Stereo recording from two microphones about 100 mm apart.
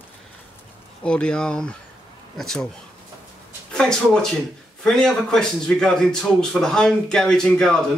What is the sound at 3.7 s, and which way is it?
Speech, 5° left (ahead or behind).